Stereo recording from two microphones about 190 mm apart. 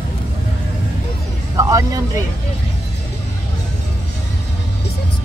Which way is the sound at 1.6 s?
20° right (ahead or behind).